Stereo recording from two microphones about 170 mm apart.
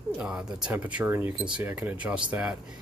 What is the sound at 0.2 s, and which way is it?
Speech, 5° right (ahead or behind).